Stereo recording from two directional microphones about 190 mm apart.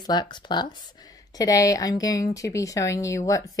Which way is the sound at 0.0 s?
20° left (ahead or behind).